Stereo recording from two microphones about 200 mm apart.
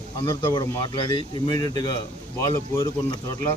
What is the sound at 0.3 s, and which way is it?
Speech, 20° left (ahead or behind).